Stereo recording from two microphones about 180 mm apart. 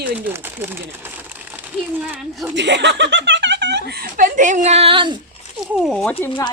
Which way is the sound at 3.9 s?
55° right (ahead or behind).